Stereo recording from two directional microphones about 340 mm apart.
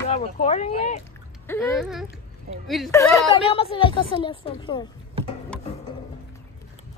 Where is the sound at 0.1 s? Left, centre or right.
Centre.